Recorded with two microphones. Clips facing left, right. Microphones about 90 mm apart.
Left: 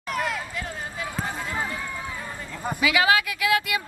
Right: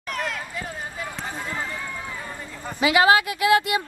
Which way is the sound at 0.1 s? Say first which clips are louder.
Left 1 dB; 5° left (ahead or behind).